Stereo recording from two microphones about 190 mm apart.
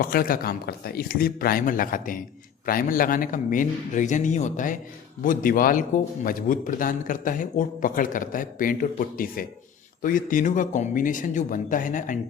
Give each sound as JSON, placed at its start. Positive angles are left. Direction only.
{"t": 0.0, "sound": "a man's voice", "side_deg": 50}